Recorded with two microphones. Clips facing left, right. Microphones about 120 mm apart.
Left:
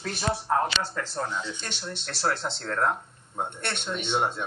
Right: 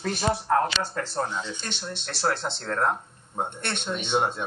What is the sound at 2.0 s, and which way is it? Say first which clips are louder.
Speech: right 1 dB; 20° right (ahead or behind).